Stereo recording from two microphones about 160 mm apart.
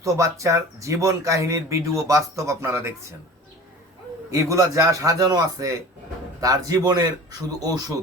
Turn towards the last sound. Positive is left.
turn(degrees=-25)  # may be behind; listen again after turning